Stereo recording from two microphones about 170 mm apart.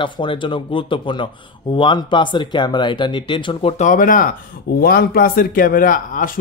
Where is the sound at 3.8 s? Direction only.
50° left (ahead or behind).